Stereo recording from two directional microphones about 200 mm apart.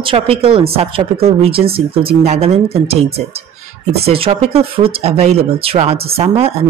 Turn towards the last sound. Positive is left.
turn(degrees=-30)  # may be behind; listen again after turning